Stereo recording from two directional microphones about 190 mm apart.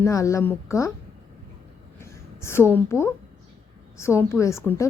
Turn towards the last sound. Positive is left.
turn(degrees=10)  # may be behind; listen again after turning